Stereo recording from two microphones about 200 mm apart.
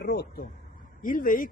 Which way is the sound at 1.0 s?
40° left (ahead or behind).